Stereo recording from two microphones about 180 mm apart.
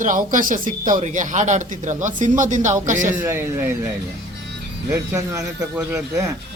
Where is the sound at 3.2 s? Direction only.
10° right (ahead or behind).